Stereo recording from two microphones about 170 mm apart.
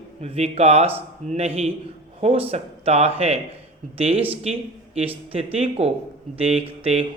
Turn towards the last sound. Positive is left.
turn(degrees=-35)  # may be behind; listen again after turning